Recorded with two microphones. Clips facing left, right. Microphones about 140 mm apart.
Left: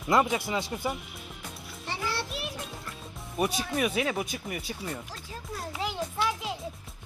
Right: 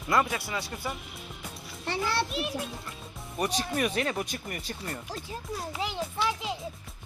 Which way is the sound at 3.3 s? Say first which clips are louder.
Left 1 dB; 5° left (ahead or behind).